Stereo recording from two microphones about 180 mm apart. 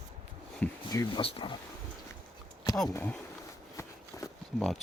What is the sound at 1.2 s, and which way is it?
Speech, 30° left (ahead or behind).